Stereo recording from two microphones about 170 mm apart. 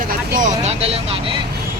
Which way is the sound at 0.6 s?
35° right (ahead or behind).